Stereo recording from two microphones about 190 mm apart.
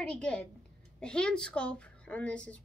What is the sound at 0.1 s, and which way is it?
A woman's voice, 5° left (ahead or behind).